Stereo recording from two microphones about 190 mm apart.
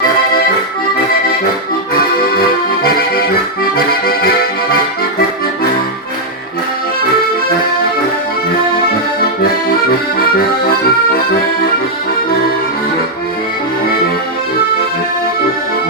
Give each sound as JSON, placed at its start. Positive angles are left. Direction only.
{"t": 2.0, "sound": "accordion", "side_deg": 50}
{"t": 10.2, "sound": "accordion", "side_deg": 50}